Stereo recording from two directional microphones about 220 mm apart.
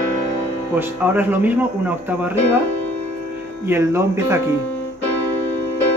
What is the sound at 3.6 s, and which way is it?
Speech, 10° right (ahead or behind).